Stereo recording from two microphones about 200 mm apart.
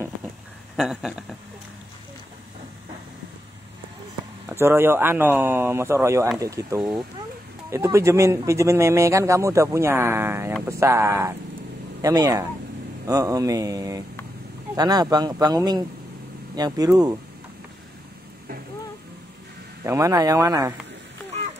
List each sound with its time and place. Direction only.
0.7 s a sound: centre (ahead or behind)
4.5 s speech: 10° right (ahead or behind)
19.8 s speech: 15° right (ahead or behind)